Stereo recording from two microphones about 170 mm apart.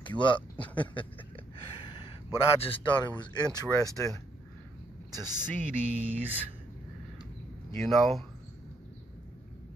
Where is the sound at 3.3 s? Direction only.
25° left (ahead or behind).